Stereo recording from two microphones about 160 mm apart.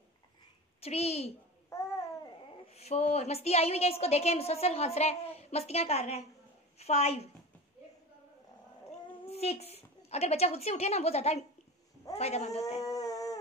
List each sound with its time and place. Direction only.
0.7 s a child's voice: 40° left (ahead or behind)
1.7 s babbling: 20° left (ahead or behind)
2.7 s a woman's voice: 40° left (ahead or behind)
9.3 s a woman's voice: 40° left (ahead or behind)
12.8 s a sound: 20° left (ahead or behind)